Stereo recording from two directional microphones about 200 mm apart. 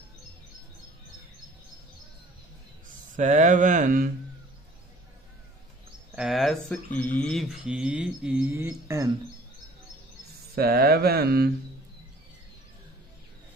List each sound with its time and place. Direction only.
3.2 s speech: 40° right (ahead or behind)
6.1 s speech: centre (ahead or behind)
10.5 s mantra: 50° right (ahead or behind)